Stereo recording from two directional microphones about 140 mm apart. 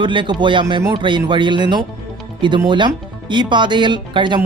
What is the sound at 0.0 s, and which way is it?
Speech, 35° right (ahead or behind).